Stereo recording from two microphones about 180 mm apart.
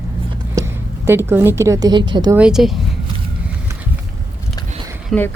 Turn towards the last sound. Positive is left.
turn(degrees=10)  # may be behind; listen again after turning